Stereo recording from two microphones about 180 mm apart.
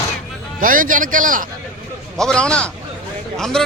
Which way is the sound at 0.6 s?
50° right (ahead or behind).